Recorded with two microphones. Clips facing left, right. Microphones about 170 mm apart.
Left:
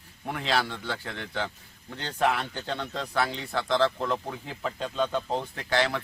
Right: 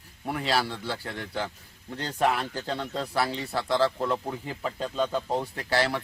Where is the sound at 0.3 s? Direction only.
5° right (ahead or behind).